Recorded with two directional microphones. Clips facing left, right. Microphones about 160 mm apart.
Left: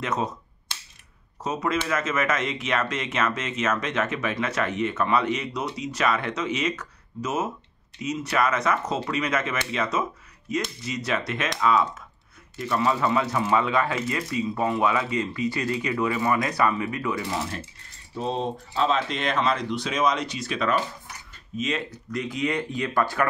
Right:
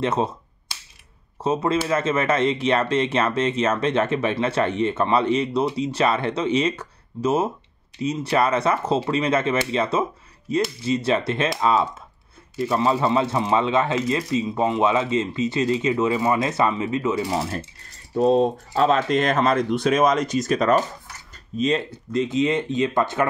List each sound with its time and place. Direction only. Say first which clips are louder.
0.0 s speech: right 5 dB; 30° right (ahead or behind)
1.4 s speech: right 5 dB; 30° right (ahead or behind)
17.3 s speech: right 5 dB; 35° right (ahead or behind)
21.5 s speech: right 6 dB; 30° right (ahead or behind)